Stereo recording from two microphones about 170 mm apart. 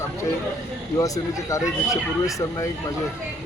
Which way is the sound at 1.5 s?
20° left (ahead or behind).